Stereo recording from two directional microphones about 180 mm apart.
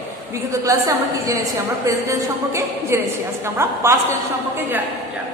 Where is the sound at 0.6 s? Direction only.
20° right (ahead or behind).